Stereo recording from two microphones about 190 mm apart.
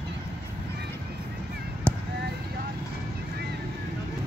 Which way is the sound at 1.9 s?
5° left (ahead or behind).